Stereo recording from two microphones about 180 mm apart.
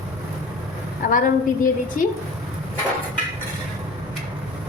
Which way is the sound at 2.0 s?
50° left (ahead or behind).